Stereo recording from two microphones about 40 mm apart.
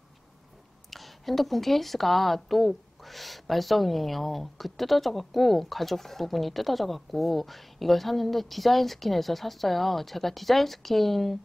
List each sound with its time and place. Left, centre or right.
0.8 s a woman's voice: centre